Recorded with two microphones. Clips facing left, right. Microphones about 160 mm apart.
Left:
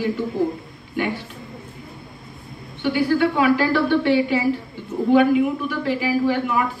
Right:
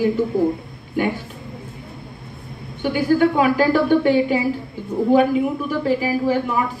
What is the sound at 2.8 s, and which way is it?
A woman's voice, 45° right (ahead or behind).